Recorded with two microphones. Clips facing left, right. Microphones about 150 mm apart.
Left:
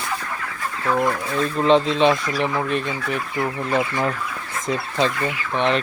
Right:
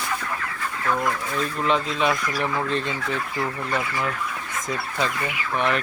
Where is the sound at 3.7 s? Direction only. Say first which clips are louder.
Left 5 dB; 30° left (ahead or behind).